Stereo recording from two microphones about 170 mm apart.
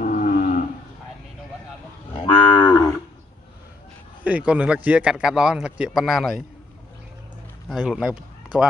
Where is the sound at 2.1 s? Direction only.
30° left (ahead or behind).